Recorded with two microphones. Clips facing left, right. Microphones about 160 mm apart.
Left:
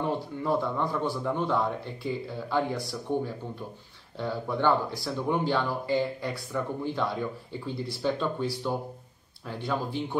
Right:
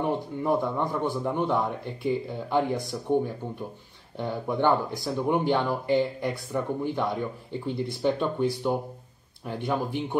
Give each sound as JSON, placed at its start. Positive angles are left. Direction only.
{"t": 0.0, "sound": "a man's voice", "side_deg": -15}